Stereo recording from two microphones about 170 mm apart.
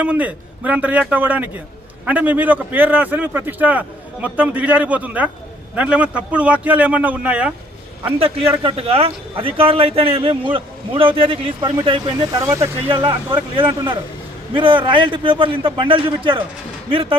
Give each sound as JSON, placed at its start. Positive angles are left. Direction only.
{"t": 0.0, "sound": "a man's voice", "side_deg": -10}
{"t": 8.0, "sound": "a man's voice", "side_deg": -35}
{"t": 12.5, "sound": "a man's voice", "side_deg": -15}
{"t": 12.9, "sound": "a man's voice", "side_deg": -30}